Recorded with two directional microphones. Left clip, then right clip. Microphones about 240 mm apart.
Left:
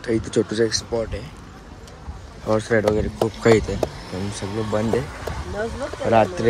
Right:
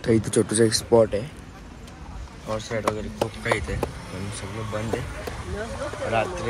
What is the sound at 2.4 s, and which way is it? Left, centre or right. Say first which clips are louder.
Speech: left 7 dB; left.